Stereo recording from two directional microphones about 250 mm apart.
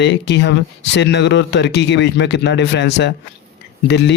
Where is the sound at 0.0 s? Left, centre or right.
Left.